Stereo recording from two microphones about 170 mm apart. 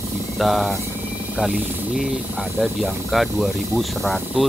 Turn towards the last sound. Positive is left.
turn(degrees=0)  # may be behind; listen again after turning